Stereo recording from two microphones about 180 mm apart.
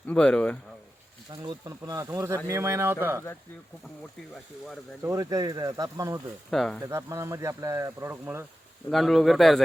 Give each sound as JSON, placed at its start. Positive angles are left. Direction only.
{"t": 0.1, "sound": "speech", "side_deg": 5}
{"t": 1.5, "sound": "speech", "side_deg": -20}
{"t": 5.0, "sound": "speech", "side_deg": -20}
{"t": 6.5, "sound": "speech", "side_deg": 0}
{"t": 6.8, "sound": "speech", "side_deg": -15}
{"t": 8.9, "sound": "speech", "side_deg": 0}